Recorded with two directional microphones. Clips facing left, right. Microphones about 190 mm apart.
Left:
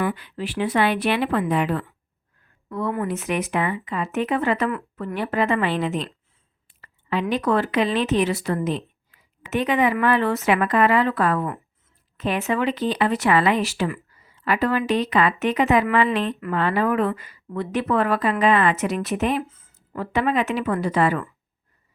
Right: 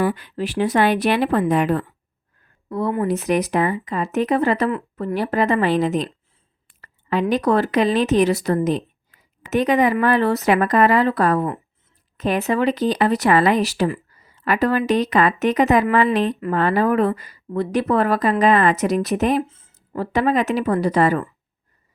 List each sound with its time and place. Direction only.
0.0 s speech: 40° right (ahead or behind)
19.5 s a sound: 30° right (ahead or behind)
20.1 s speech: 40° right (ahead or behind)